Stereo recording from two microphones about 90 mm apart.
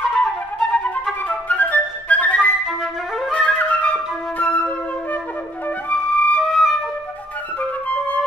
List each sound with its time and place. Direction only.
0.1 s flute: 15° left (ahead or behind)
2.6 s flute: 5° right (ahead or behind)
3.3 s flute: 15° left (ahead or behind)
6.4 s flute: centre (ahead or behind)
7.9 s flute: 15° left (ahead or behind)